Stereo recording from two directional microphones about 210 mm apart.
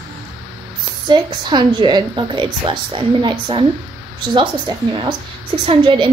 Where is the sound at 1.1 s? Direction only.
20° right (ahead or behind).